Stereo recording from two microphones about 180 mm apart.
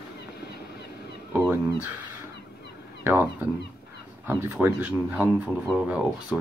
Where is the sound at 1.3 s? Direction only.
10° right (ahead or behind).